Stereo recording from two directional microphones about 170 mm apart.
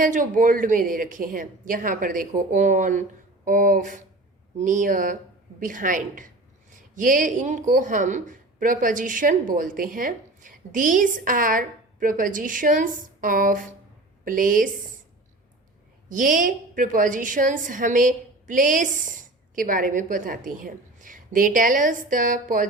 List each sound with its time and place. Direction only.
0.0 s a woman's voice: 50° right (ahead or behind)
16.0 s a woman's voice: 50° right (ahead or behind)